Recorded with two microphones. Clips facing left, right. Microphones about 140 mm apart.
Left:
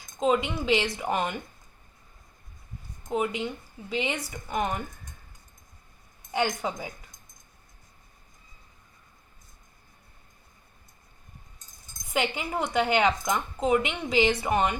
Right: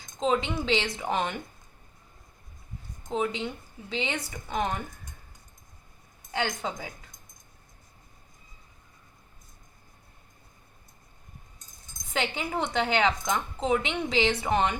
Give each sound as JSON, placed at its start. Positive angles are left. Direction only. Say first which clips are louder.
{"t": 0.2, "sound": "speech", "louder": "left 2 dB", "side_deg": 10}
{"t": 3.1, "sound": "speech", "louder": "left 1 dB", "side_deg": 15}
{"t": 6.3, "sound": "speech", "louder": "left 3 dB", "side_deg": 15}
{"t": 12.1, "sound": "speech", "louder": "left 1 dB", "side_deg": 10}